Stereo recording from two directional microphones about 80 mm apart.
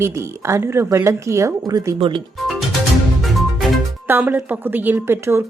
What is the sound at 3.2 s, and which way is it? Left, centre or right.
Music, centre.